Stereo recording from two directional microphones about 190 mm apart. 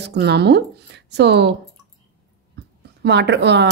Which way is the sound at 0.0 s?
60° right (ahead or behind).